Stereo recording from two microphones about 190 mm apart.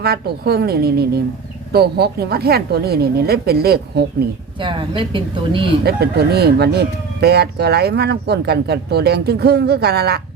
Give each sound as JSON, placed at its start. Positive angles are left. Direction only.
{"t": 0.0, "sound": "speech", "side_deg": -55}
{"t": 4.6, "sound": "a woman's voice", "side_deg": -25}
{"t": 5.8, "sound": "speech", "side_deg": -55}